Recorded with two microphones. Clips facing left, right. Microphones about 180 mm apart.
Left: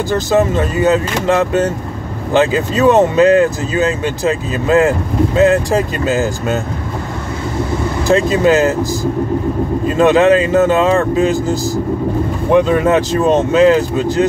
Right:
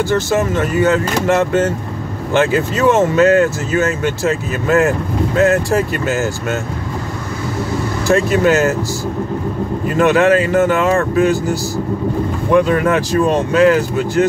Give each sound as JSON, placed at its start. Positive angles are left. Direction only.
{"t": 0.1, "sound": "speech", "side_deg": 20}
{"t": 8.1, "sound": "speech", "side_deg": 20}
{"t": 9.8, "sound": "speech", "side_deg": 20}